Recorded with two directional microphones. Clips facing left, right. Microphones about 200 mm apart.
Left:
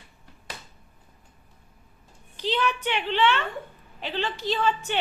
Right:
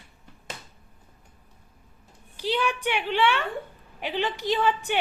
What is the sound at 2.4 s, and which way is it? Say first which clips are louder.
A woman's voice: even; 10° right (ahead or behind).